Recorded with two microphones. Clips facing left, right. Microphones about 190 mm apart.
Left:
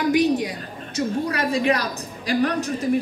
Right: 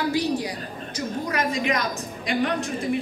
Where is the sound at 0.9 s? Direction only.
30° left (ahead or behind).